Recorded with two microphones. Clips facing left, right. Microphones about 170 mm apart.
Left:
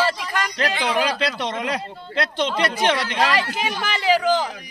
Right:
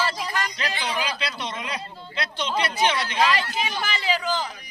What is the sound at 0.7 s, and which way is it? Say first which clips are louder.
Speech: left 6 dB; 80° left.